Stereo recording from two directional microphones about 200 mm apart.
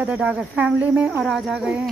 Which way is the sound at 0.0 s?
5° right (ahead or behind).